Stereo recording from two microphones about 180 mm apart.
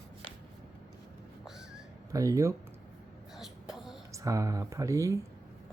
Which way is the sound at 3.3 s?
Centre (ahead or behind).